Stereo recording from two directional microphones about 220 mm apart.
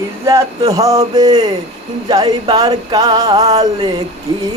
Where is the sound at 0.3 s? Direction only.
15° right (ahead or behind).